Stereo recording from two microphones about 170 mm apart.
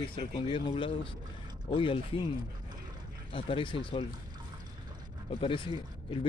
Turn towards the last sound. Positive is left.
turn(degrees=30)  # may be behind; listen again after turning